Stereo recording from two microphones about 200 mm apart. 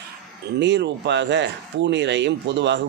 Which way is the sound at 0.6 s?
60° right (ahead or behind).